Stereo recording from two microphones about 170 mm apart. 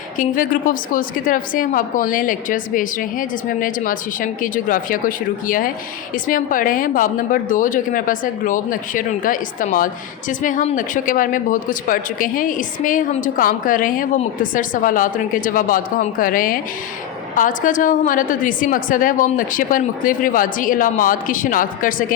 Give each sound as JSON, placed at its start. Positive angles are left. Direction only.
{"t": 0.2, "sound": "a woman's voice", "side_deg": 55}